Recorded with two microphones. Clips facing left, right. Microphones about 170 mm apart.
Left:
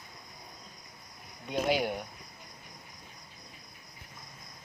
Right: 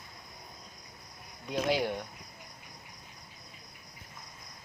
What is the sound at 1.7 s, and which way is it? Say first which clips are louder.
Speech: even; 5° left (ahead or behind).